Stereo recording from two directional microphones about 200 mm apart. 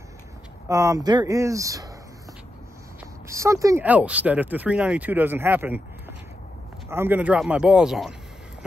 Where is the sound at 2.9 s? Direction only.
15° right (ahead or behind).